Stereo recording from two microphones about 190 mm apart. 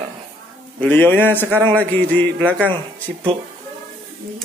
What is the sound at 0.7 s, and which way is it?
A man's voice, 10° left (ahead or behind).